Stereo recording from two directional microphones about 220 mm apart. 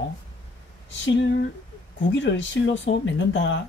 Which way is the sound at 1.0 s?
55° left (ahead or behind).